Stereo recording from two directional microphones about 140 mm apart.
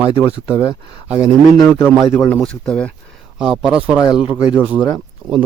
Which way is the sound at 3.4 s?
5° right (ahead or behind).